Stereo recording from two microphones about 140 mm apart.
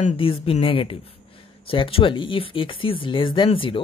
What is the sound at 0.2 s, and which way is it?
Speech, 40° left (ahead or behind).